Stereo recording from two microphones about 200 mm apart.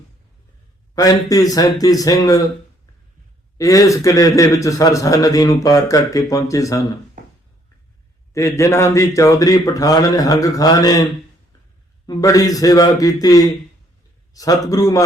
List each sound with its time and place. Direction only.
0.9 s speech: 15° left (ahead or behind)
3.6 s speech: 15° left (ahead or behind)
8.3 s speech: 15° left (ahead or behind)